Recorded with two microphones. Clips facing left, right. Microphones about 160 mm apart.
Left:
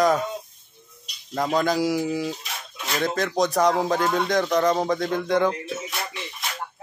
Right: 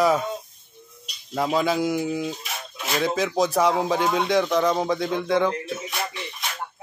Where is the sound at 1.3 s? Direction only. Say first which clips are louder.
Even; 5° right (ahead or behind).